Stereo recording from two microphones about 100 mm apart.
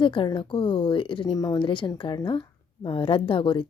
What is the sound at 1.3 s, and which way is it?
Speech, 40° left (ahead or behind).